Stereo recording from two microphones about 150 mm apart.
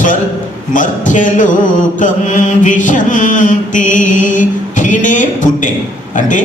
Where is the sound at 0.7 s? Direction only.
60° left (ahead or behind).